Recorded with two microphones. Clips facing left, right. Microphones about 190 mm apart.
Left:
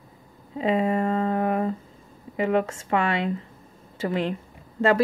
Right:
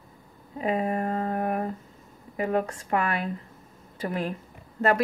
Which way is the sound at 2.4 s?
90° left.